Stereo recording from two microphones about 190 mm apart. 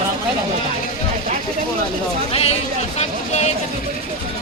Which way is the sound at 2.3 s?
30° left (ahead or behind).